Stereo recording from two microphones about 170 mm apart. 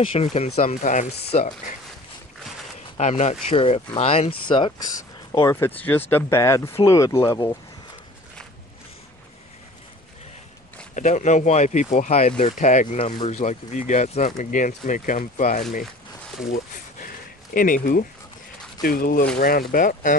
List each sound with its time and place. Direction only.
0.1 s speech: 35° left (ahead or behind)
3.0 s speech: 40° left (ahead or behind); by 4.9 s 25° left (ahead or behind)
5.4 s speech: 15° left (ahead or behind)
11.0 s speech: 45° left (ahead or behind)
17.6 s speech: 55° left (ahead or behind)